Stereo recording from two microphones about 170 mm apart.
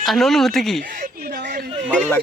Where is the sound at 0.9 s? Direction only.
55° right (ahead or behind).